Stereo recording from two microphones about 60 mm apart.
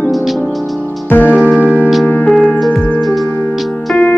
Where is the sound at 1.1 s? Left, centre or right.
Left.